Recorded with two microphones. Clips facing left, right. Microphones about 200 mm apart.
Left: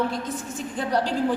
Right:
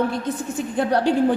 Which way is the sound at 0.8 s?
60° right (ahead or behind).